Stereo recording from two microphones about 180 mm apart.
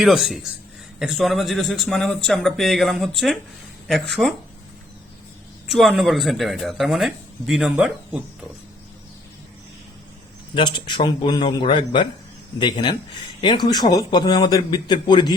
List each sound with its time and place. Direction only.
0.0 s speech: centre (ahead or behind)
5.6 s speech: centre (ahead or behind)
10.5 s speech: 25° left (ahead or behind)